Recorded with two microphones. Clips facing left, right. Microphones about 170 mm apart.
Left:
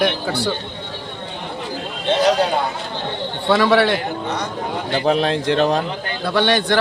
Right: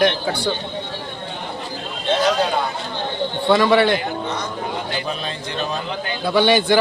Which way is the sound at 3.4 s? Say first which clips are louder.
Even; centre (ahead or behind).